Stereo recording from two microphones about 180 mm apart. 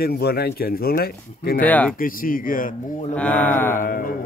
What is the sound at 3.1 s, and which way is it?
Speech, 10° left (ahead or behind).